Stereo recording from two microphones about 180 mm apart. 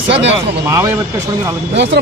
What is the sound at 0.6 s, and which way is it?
Speech, 15° right (ahead or behind).